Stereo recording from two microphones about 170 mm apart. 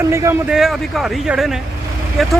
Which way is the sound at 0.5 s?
Centre (ahead or behind).